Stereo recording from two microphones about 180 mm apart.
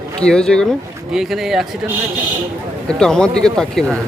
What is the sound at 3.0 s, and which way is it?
Speech, 5° left (ahead or behind).